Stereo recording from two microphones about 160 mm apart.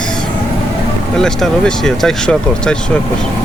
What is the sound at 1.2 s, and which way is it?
Speech, 5° left (ahead or behind).